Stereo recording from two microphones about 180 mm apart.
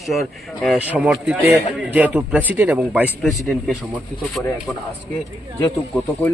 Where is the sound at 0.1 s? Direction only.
Centre (ahead or behind).